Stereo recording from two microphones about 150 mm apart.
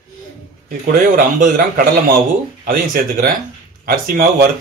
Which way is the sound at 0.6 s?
70° right (ahead or behind).